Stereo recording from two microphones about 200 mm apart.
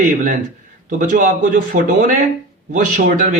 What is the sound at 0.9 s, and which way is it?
A man's voice, 40° right (ahead or behind).